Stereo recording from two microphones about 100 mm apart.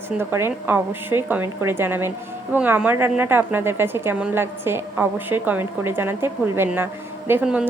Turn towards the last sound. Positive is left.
turn(degrees=-10)  # may be behind; listen again after turning